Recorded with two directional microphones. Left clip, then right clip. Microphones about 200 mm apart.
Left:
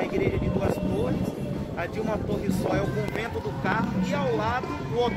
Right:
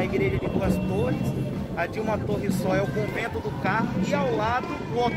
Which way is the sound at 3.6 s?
55° right (ahead or behind).